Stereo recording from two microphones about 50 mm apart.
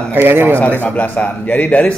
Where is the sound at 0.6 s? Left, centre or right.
Left.